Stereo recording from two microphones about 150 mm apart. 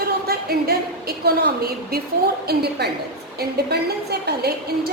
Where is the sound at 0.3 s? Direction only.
90° right.